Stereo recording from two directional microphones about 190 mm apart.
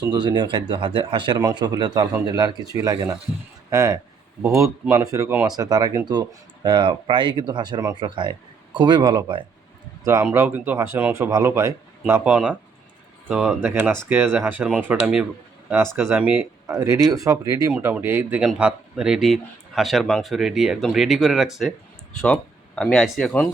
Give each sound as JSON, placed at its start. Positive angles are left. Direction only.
{"t": 0.0, "sound": "a man's voice", "side_deg": -20}